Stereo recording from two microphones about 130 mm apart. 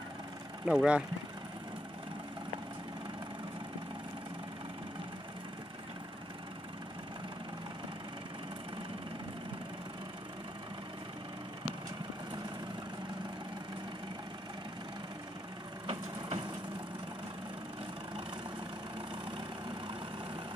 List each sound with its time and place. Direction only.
0.7 s speech: 10° right (ahead or behind)
15.9 s wood: 45° right (ahead or behind)